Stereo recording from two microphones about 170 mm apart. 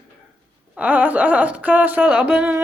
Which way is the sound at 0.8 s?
10° right (ahead or behind).